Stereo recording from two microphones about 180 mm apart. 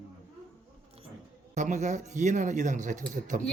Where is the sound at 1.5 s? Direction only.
45° right (ahead or behind).